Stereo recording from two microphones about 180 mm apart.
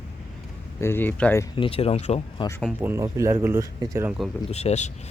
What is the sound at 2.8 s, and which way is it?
Speech, 15° right (ahead or behind).